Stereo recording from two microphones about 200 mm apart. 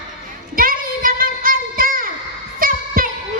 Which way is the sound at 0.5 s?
45° right (ahead or behind).